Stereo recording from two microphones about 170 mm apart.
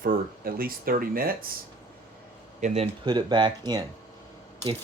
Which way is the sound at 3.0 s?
25° right (ahead or behind).